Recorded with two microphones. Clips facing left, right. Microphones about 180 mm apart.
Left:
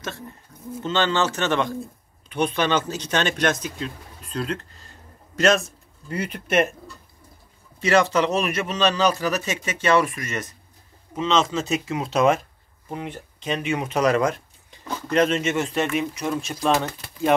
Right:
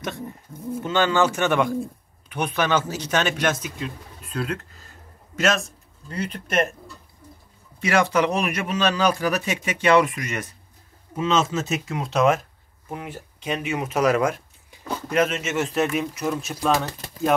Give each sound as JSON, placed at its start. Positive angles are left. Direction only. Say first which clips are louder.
{"t": 0.0, "sound": "a man's voice", "louder": "right 3 dB", "side_deg": -15}
{"t": 6.0, "sound": "speech", "louder": "left 2 dB", "side_deg": 10}
{"t": 7.8, "sound": "a man's voice", "louder": "left 1 dB", "side_deg": -10}